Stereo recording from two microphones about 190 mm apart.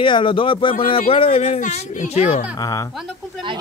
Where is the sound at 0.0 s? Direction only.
25° left (ahead or behind).